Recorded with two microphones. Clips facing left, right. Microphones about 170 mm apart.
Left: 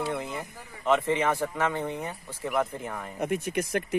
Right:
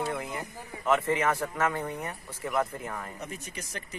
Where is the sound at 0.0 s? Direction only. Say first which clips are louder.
Left 1 dB; 10° left (ahead or behind).